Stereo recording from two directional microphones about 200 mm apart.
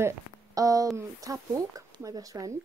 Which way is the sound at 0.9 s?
15° right (ahead or behind).